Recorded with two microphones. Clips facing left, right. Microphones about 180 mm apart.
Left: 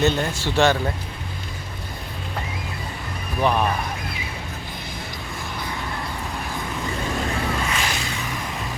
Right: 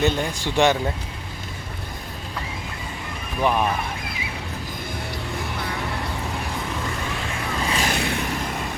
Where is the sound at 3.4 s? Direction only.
5° right (ahead or behind).